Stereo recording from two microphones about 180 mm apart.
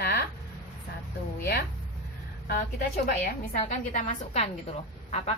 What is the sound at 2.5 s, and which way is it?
A woman's voice, 55° left (ahead or behind).